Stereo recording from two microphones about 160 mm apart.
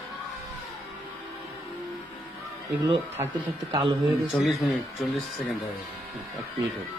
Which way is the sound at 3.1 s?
15° right (ahead or behind).